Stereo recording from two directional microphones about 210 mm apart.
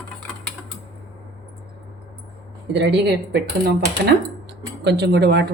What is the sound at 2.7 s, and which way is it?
Speech, 55° right (ahead or behind).